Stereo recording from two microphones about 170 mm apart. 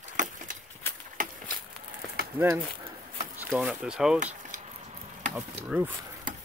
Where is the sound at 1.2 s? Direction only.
55° right (ahead or behind).